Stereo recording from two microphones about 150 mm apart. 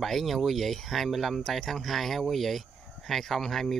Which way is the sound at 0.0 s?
Centre (ahead or behind).